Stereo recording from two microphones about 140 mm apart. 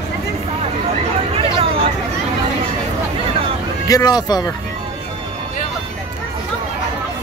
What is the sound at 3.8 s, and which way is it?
Speech, 30° left (ahead or behind).